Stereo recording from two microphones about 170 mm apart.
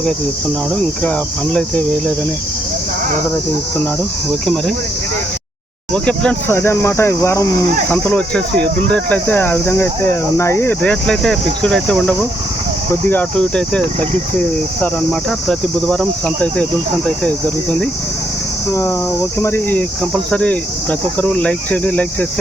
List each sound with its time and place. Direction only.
1.5 s speech: 10° left (ahead or behind)
4.3 s speech: 5° left (ahead or behind)
5.9 s speech: 5° left (ahead or behind)
15.4 s speech: 5° left (ahead or behind)
18.7 s speech: 20° left (ahead or behind)